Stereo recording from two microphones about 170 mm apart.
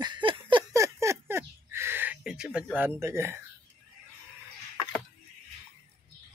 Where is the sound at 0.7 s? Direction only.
15° right (ahead or behind).